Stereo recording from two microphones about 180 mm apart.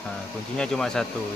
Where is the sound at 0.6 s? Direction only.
5° left (ahead or behind).